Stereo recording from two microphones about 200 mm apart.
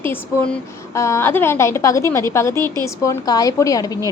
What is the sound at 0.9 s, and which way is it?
A woman's voice, 15° left (ahead or behind).